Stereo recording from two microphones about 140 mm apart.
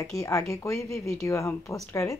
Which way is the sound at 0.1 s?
25° left (ahead or behind).